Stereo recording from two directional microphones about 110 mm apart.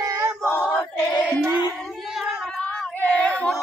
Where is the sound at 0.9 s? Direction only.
35° left (ahead or behind).